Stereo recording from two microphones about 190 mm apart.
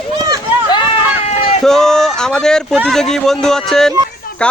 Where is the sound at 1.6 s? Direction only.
5° left (ahead or behind).